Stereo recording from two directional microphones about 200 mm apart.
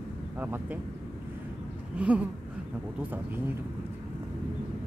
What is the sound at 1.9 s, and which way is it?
Speech, 5° right (ahead or behind).